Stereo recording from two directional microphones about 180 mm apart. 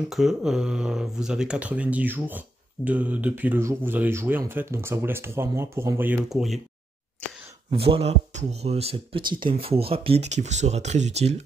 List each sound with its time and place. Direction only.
0.1 s speech: centre (ahead or behind)
7.7 s speech: 30° right (ahead or behind)